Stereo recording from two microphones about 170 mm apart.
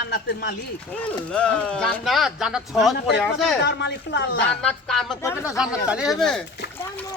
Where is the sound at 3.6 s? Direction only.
90° left.